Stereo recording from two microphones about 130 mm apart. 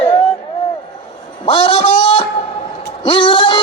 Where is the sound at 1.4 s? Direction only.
40° left (ahead or behind).